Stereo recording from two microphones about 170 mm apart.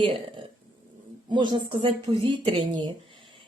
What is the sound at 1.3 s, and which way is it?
Speech, 25° right (ahead or behind).